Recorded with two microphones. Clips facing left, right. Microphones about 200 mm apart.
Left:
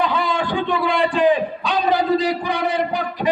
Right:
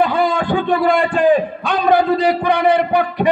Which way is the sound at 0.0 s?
55° right (ahead or behind).